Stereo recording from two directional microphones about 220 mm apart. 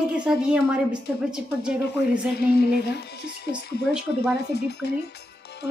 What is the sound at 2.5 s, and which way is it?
Speech, 45° left (ahead or behind).